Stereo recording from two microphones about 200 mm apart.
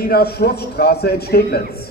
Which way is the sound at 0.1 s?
50° left (ahead or behind).